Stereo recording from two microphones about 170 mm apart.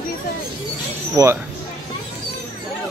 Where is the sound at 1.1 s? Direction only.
15° right (ahead or behind).